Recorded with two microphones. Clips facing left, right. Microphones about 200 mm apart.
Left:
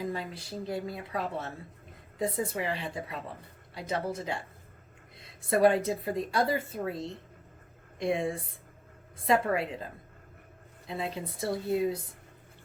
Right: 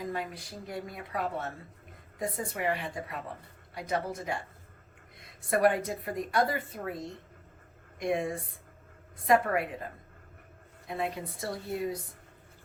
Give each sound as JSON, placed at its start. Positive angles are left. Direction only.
{"t": 0.1, "sound": "a woman's voice", "side_deg": 25}
{"t": 10.8, "sound": "a woman's voice", "side_deg": 25}